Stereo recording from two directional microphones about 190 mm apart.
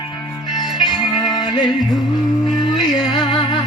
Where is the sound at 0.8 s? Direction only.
Centre (ahead or behind).